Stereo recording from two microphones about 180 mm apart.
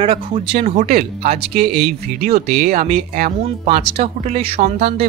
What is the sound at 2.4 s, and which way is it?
Speech, 60° right (ahead or behind).